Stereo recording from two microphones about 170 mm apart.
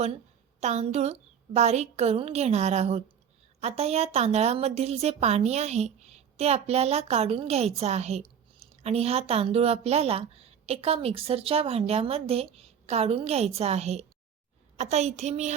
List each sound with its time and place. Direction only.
0.6 s a woman's voice: 40° right (ahead or behind)